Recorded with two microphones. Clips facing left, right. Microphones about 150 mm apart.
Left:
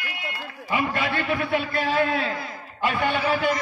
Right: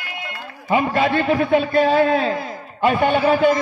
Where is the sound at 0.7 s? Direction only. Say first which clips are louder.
Right 7 dB; 30° right (ahead or behind).